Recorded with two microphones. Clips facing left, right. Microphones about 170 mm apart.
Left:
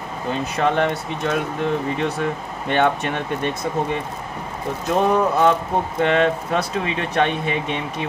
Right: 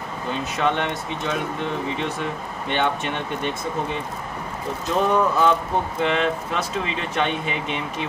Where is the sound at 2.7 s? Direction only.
45° left (ahead or behind).